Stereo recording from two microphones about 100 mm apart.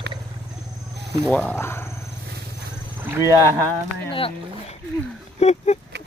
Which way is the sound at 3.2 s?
35° left (ahead or behind).